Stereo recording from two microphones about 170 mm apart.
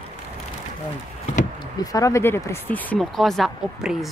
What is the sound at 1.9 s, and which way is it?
Speech, 15° left (ahead or behind).